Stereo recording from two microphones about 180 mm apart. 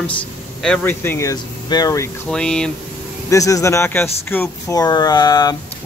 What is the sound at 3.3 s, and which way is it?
Speech, 20° left (ahead or behind).